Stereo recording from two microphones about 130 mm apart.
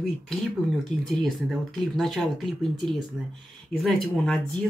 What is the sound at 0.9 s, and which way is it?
Speech, 70° left (ahead or behind).